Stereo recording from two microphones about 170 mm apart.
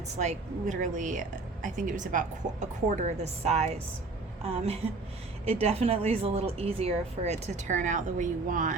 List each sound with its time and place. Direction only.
0.2 s a woman's voice: 45° right (ahead or behind)